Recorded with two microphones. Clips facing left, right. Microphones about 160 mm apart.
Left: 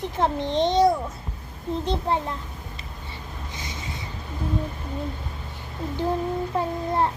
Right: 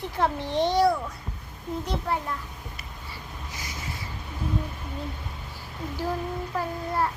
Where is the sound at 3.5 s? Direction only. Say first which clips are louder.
Left 1 dB; 25° left (ahead or behind).